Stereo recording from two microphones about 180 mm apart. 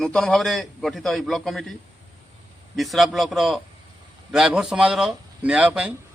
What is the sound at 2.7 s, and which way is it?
A man's voice, centre (ahead or behind).